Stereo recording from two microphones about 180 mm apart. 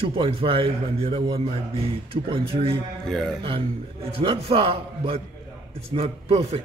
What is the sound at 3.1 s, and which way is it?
Speech, centre (ahead or behind).